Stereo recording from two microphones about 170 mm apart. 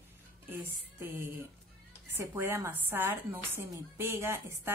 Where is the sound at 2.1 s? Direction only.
15° right (ahead or behind).